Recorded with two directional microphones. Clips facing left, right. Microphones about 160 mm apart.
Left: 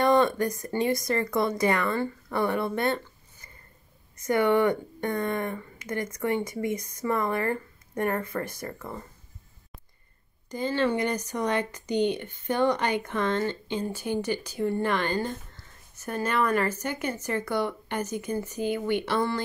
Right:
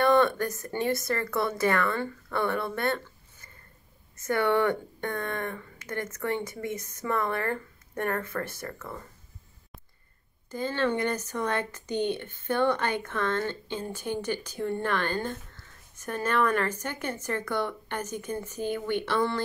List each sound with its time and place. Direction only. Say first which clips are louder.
0.0 s speech: left 1 dB; 15° left (ahead or behind)
10.5 s speech: left 2 dB; 15° left (ahead or behind)